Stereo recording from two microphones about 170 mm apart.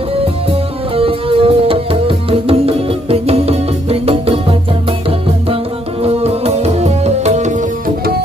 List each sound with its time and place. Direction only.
0.9 s music: 35° right (ahead or behind)
6.0 s music: 35° right (ahead or behind)